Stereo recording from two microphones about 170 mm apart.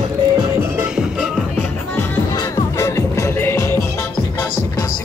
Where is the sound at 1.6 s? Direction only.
10° left (ahead or behind).